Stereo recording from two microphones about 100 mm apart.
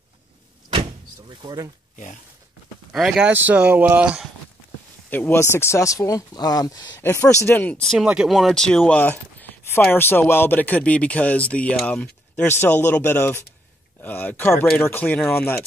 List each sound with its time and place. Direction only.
1.4 s speech: 40° right (ahead or behind)
2.9 s speech: 5° right (ahead or behind)
5.1 s speech: 20° left (ahead or behind); by 7.0 s 45° left (ahead or behind)
7.0 s speech: 25° left (ahead or behind)
8.0 s speech: 5° right (ahead or behind); by 12.4 s 10° left (ahead or behind)
12.4 s speech: 25° left (ahead or behind)